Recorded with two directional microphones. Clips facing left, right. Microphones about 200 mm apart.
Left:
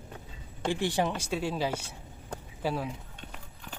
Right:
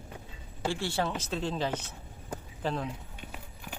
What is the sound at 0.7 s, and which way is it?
Speech, 15° left (ahead or behind).